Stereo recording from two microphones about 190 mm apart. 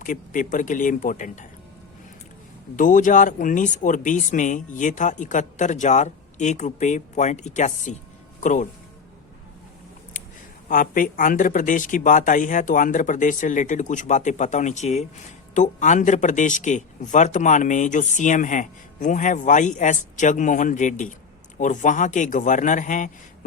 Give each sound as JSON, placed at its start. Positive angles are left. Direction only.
{"t": 0.0, "sound": "speech", "side_deg": 45}
{"t": 2.7, "sound": "speech", "side_deg": 45}
{"t": 10.7, "sound": "speech", "side_deg": 45}